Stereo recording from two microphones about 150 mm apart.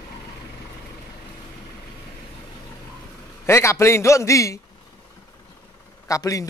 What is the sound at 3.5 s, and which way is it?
A man's voice, 20° left (ahead or behind).